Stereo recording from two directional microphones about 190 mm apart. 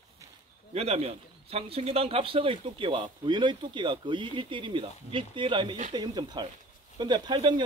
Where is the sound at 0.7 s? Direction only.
35° right (ahead or behind).